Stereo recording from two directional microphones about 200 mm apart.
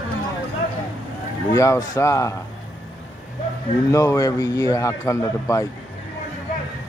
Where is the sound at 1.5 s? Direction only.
15° left (ahead or behind).